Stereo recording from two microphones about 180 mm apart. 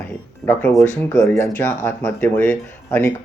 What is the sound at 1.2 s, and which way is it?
Speech, 10° left (ahead or behind).